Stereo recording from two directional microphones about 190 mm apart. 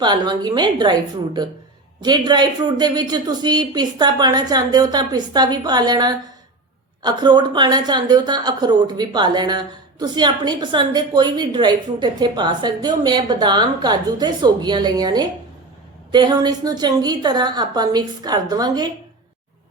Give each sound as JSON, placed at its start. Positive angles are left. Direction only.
{"t": 0.0, "sound": "a woman's voice", "side_deg": -25}